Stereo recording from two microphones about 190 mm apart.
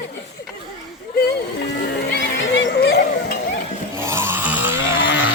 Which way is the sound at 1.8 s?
65° left (ahead or behind).